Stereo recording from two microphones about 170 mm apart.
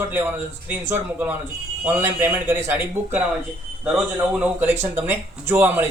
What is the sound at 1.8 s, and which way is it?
Speech, 10° right (ahead or behind).